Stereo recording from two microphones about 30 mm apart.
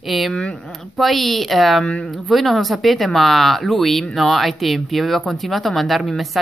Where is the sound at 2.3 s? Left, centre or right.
Centre.